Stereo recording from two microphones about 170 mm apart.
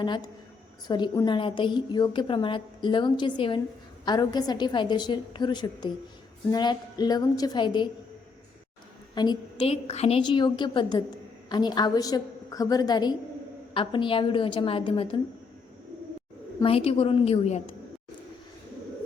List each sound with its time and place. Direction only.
0.0 s a woman's voice: 25° left (ahead or behind)
9.1 s a woman's voice: 25° left (ahead or behind)
16.6 s a woman's voice: 35° left (ahead or behind)